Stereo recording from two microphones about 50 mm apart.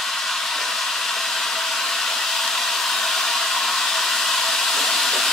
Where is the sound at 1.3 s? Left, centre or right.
Centre.